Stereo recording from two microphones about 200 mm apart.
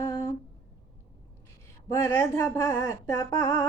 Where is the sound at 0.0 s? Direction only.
15° left (ahead or behind).